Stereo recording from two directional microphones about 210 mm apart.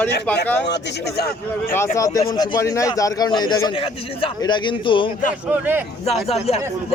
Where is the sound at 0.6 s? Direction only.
55° left (ahead or behind).